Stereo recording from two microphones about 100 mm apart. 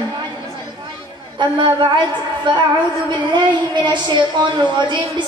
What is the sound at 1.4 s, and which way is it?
A woman's voice, 50° right (ahead or behind).